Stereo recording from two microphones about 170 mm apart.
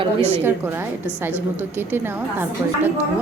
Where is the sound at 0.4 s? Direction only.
15° right (ahead or behind).